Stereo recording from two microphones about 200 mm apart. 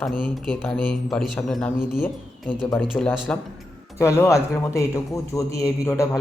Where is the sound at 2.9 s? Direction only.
5° left (ahead or behind).